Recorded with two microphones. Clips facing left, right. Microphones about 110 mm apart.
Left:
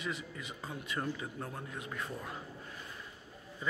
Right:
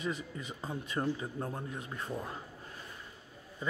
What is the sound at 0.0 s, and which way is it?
Speech, 40° right (ahead or behind).